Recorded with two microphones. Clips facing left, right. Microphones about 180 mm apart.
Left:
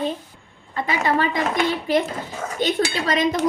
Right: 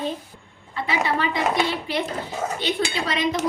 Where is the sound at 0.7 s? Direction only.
45° left (ahead or behind).